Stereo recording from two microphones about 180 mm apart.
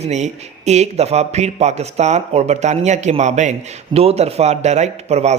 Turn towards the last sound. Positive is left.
turn(degrees=-40)  # may be behind; listen again after turning